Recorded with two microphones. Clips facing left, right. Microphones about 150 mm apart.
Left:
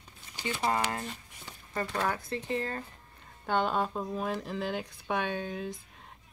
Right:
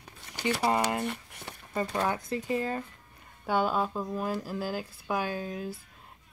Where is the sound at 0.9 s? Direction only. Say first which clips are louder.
Right 6 dB; 65° right (ahead or behind).